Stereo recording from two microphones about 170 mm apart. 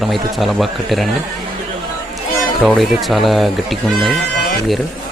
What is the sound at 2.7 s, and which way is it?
Speech, centre (ahead or behind).